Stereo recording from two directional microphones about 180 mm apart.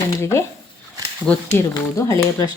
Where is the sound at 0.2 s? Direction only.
15° left (ahead or behind).